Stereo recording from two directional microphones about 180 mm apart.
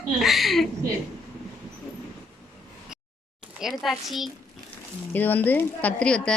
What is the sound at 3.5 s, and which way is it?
Speech, centre (ahead or behind).